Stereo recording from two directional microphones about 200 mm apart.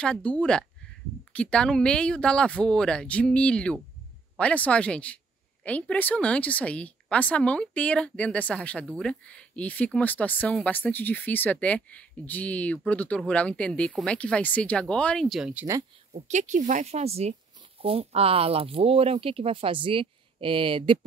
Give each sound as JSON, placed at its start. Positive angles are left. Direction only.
{"t": 0.0, "sound": "speech", "side_deg": 5}
{"t": 16.1, "sound": "speech", "side_deg": -35}